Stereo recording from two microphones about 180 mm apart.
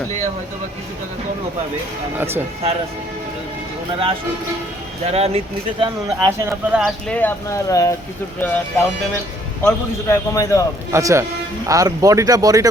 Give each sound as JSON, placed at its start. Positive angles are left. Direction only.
{"t": 2.1, "sound": "speech", "side_deg": -10}
{"t": 5.0, "sound": "speech", "side_deg": -35}
{"t": 5.8, "sound": "speech", "side_deg": -20}
{"t": 6.7, "sound": "speech", "side_deg": 0}
{"t": 7.2, "sound": "a man's voice", "side_deg": 15}
{"t": 10.9, "sound": "speech", "side_deg": -15}